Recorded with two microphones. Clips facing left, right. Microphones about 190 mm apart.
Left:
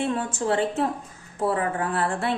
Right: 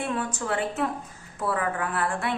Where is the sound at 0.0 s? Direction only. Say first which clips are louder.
Left 4 dB; 30° left (ahead or behind).